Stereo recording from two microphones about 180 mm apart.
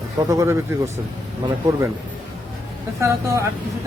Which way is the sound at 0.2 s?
15° right (ahead or behind).